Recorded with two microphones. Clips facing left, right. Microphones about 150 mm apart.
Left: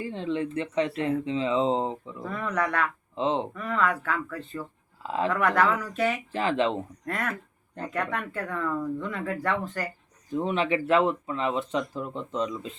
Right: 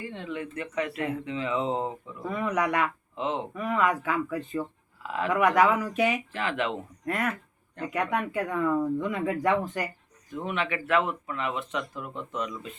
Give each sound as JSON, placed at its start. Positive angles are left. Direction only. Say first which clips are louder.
{"t": 0.0, "sound": "speech", "louder": "left 6 dB", "side_deg": 30}
{"t": 2.2, "sound": "speech", "louder": "right 2 dB", "side_deg": -10}
{"t": 3.2, "sound": "speech", "louder": "left 4 dB", "side_deg": 30}
{"t": 3.5, "sound": "speech", "louder": "right 1 dB", "side_deg": -10}
{"t": 5.0, "sound": "speech", "louder": "left 3 dB", "side_deg": 30}
{"t": 5.3, "sound": "speech", "louder": "right 3 dB", "side_deg": -10}
{"t": 6.3, "sound": "speech", "louder": "left 4 dB", "side_deg": 30}
{"t": 7.0, "sound": "speech", "louder": "right 2 dB", "side_deg": -10}
{"t": 10.2, "sound": "speech", "louder": "left 5 dB", "side_deg": 30}